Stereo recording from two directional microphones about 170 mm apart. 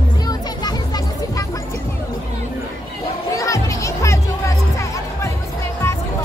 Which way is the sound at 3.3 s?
20° left (ahead or behind).